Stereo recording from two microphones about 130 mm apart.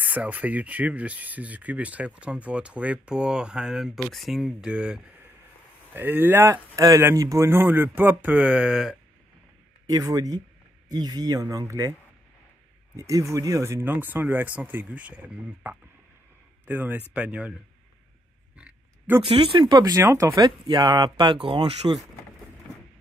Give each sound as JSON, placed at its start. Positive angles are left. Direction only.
{"t": 0.0, "sound": "speech", "side_deg": -10}
{"t": 6.5, "sound": "speech", "side_deg": -25}
{"t": 9.8, "sound": "speech", "side_deg": -25}
{"t": 12.9, "sound": "speech", "side_deg": -25}
{"t": 18.6, "sound": "oink", "side_deg": -15}
{"t": 19.2, "sound": "speech", "side_deg": -45}
{"t": 19.9, "sound": "speech", "side_deg": -20}